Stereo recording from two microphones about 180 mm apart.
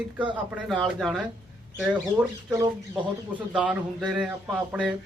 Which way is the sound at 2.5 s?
20° right (ahead or behind).